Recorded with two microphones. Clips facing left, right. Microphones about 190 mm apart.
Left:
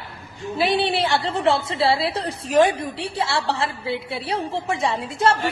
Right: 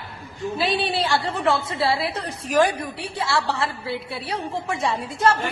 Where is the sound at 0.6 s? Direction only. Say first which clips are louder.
Left 4 dB; 20° left (ahead or behind).